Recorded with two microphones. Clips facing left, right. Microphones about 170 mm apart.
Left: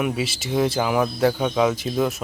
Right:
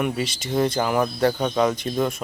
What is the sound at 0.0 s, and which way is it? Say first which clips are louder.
Speech: left 1 dB; 5° left (ahead or behind).